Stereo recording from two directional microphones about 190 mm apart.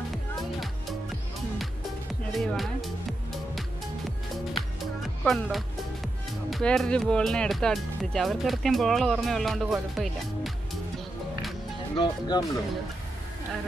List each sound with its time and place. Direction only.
0.4 s music: centre (ahead or behind)
2.3 s music: centre (ahead or behind)
5.2 s speech: centre (ahead or behind)
12.0 s speech: 20° left (ahead or behind)